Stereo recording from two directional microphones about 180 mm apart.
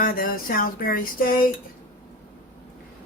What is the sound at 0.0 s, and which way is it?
Speech, 55° left (ahead or behind).